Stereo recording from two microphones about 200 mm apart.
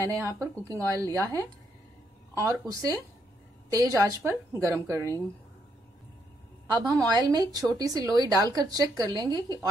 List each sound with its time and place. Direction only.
0.0 s a woman's voice: 15° right (ahead or behind)
7.1 s a woman's voice: 20° right (ahead or behind)